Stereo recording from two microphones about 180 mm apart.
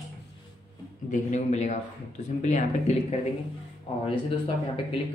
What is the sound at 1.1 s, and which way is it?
Speech, 40° left (ahead or behind).